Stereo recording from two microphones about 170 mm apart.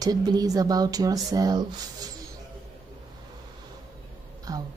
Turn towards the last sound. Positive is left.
turn(degrees=-20)  # may be behind; listen again after turning